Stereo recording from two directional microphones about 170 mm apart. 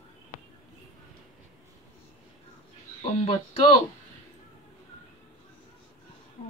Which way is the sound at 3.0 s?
35° left (ahead or behind).